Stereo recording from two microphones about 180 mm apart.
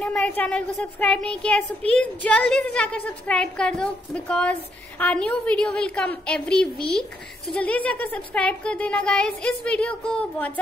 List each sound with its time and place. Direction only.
0.0 s a woman's voice: 5° left (ahead or behind)